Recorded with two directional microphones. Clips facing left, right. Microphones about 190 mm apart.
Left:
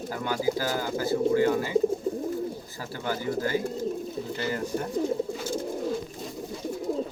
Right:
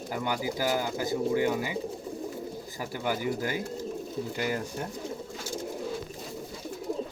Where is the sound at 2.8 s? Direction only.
15° right (ahead or behind).